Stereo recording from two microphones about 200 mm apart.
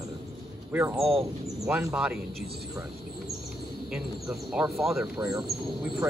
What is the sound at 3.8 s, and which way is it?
Speech, centre (ahead or behind).